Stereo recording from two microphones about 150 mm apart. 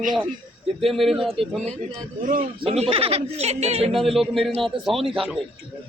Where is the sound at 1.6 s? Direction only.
45° right (ahead or behind).